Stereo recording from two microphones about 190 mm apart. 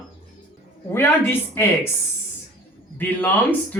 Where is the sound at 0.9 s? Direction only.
10° left (ahead or behind).